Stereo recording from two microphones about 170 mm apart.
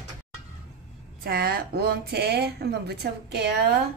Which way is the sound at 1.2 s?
65° right (ahead or behind).